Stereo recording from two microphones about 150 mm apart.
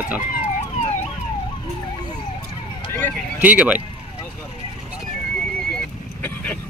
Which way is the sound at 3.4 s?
10° right (ahead or behind).